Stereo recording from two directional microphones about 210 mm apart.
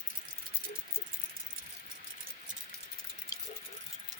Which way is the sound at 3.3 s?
15° left (ahead or behind).